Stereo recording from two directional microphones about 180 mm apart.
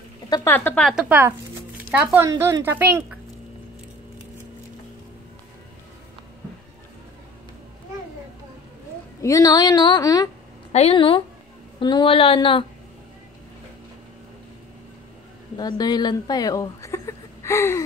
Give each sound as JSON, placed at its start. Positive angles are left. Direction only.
{"t": 0.3, "sound": "speech", "side_deg": 15}
{"t": 1.0, "sound": "speech", "side_deg": -10}
{"t": 9.2, "sound": "a woman's voice", "side_deg": 20}
{"t": 10.7, "sound": "a woman's voice", "side_deg": 35}
{"t": 15.5, "sound": "a woman's voice", "side_deg": 20}